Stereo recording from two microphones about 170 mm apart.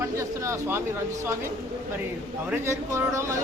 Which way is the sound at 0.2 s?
15° right (ahead or behind).